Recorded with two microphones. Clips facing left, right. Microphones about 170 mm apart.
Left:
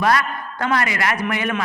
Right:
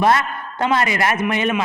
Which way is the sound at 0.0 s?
25° right (ahead or behind).